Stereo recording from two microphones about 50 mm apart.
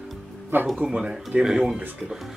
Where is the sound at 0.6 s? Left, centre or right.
Centre.